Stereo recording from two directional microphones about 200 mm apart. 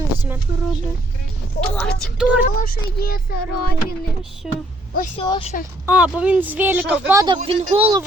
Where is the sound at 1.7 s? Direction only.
5° left (ahead or behind).